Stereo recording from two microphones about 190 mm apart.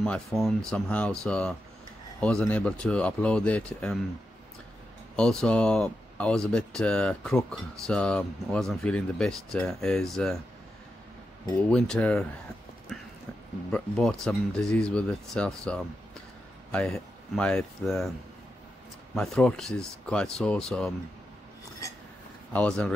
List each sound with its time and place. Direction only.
0.0 s speech: 5° left (ahead or behind)
5.1 s speech: 5° left (ahead or behind)
11.7 s speech: 5° left (ahead or behind)
13.7 s speech: 5° left (ahead or behind)
19.1 s speech: 5° left (ahead or behind)
22.5 s speech: 5° left (ahead or behind)